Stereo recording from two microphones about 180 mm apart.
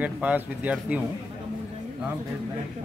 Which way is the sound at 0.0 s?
10° right (ahead or behind).